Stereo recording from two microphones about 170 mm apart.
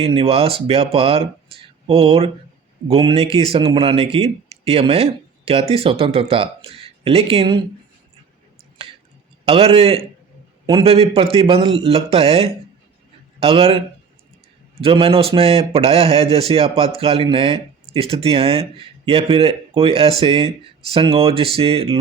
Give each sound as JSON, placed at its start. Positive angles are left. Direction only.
{"t": 0.0, "sound": "a man's voice", "side_deg": -35}
{"t": 9.5, "sound": "a man's voice", "side_deg": -35}